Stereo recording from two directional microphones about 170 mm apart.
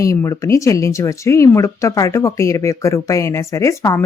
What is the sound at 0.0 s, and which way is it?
Speech, 20° left (ahead or behind).